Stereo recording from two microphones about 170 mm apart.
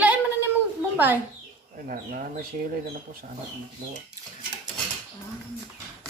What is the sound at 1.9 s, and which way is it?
Speech, 55° right (ahead or behind).